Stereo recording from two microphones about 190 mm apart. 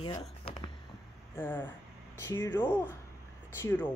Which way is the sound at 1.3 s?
10° left (ahead or behind).